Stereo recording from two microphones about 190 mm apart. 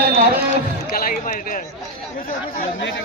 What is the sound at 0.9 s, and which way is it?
Speech, 50° left (ahead or behind).